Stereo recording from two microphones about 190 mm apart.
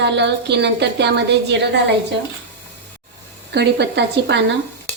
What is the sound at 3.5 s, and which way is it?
Speech, 60° right (ahead or behind).